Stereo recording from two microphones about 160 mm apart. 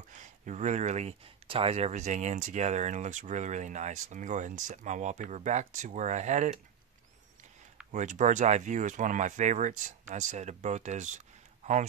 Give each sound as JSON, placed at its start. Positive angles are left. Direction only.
{"t": 0.1, "sound": "speech", "side_deg": -50}
{"t": 7.9, "sound": "speech", "side_deg": -50}